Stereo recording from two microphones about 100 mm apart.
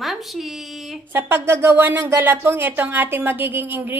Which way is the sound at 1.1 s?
20° right (ahead or behind).